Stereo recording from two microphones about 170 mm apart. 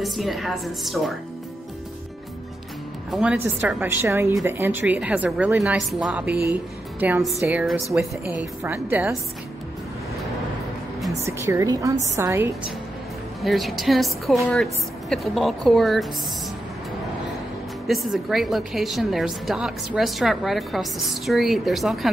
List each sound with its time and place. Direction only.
0.0 s a woman's voice: centre (ahead or behind)
3.1 s a woman's voice: 5° right (ahead or behind)
11.2 s a woman's voice: 15° right (ahead or behind)
13.4 s a woman's voice: centre (ahead or behind)
17.8 s a woman's voice: centre (ahead or behind)